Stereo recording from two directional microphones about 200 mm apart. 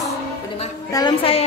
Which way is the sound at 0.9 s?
20° left (ahead or behind).